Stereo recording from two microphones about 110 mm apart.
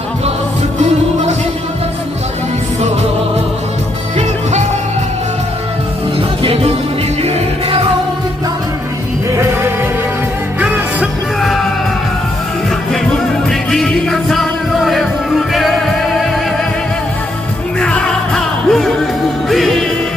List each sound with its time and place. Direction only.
0.8 s music: 90° right
6.4 s music: 60° right (ahead or behind)
9.3 s music: 25° right (ahead or behind)
11.3 s music: centre (ahead or behind)
12.9 s music: 5° left (ahead or behind)
17.7 s music: 10° left (ahead or behind)